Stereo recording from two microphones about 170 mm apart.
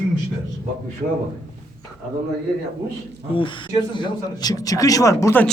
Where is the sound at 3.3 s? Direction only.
30° left (ahead or behind).